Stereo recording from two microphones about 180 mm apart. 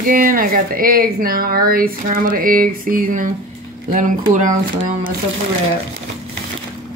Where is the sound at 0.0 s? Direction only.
50° right (ahead or behind).